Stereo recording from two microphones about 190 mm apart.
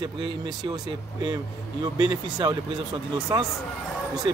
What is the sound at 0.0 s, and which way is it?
A man's voice, 25° right (ahead or behind).